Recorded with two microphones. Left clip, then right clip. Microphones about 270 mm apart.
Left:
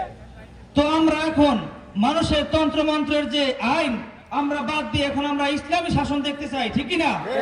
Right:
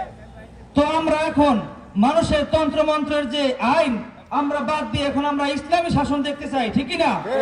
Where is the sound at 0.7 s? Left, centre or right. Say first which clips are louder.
Right 1 dB; right.